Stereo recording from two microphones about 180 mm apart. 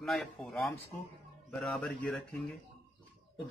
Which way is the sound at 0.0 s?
Centre (ahead or behind).